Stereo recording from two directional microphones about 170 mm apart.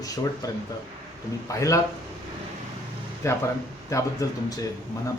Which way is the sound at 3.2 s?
20° left (ahead or behind).